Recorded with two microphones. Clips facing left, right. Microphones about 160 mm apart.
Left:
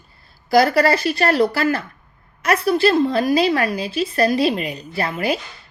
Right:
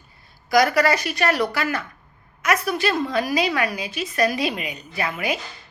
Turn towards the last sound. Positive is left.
turn(degrees=35)  # may be behind; listen again after turning